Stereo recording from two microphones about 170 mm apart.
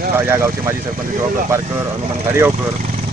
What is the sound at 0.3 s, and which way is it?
Speech, 15° right (ahead or behind).